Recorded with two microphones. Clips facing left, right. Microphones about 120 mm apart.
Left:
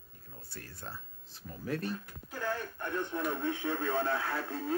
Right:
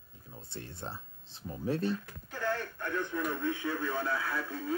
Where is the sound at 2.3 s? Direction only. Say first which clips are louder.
Right 2 dB; 15° left (ahead or behind); by 4.4 s 30° left (ahead or behind).